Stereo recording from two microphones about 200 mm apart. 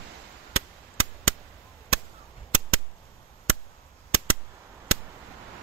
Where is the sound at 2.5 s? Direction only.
90° right.